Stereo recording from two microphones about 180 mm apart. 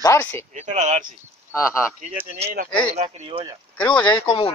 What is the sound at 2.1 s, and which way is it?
Speech, 35° right (ahead or behind).